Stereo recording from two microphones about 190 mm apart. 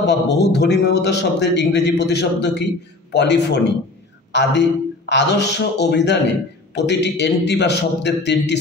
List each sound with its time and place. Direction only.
0.0 s a man's voice: 65° left (ahead or behind)